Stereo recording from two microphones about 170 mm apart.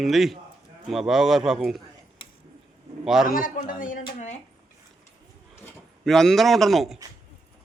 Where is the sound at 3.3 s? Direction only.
55° left (ahead or behind).